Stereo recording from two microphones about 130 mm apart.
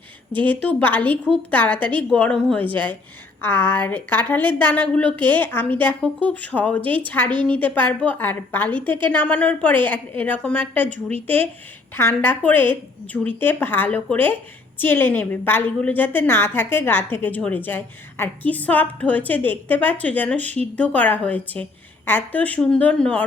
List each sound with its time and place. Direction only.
0.4 s a woman's voice: 10° left (ahead or behind)
10.8 s a woman's voice: 70° right (ahead or behind)
11.9 s a woman's voice: 15° left (ahead or behind)